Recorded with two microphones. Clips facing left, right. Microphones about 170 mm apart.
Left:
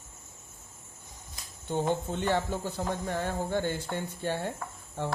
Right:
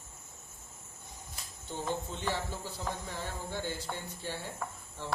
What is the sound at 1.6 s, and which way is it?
Speech, 60° left (ahead or behind).